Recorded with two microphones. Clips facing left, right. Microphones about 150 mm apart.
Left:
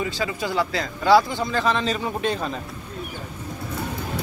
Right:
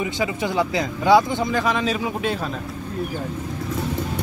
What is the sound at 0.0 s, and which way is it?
Speech, 20° right (ahead or behind).